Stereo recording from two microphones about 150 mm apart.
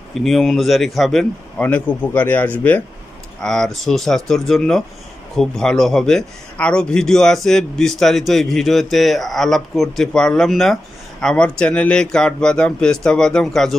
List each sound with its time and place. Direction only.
0.1 s speech: centre (ahead or behind)
1.6 s speech: 10° left (ahead or behind)